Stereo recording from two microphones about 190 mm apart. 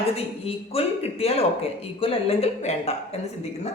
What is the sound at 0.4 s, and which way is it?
A man's voice, 30° left (ahead or behind).